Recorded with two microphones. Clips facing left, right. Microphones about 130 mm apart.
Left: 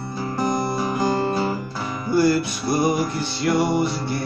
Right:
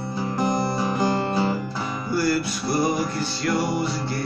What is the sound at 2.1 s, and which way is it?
Music, 20° left (ahead or behind).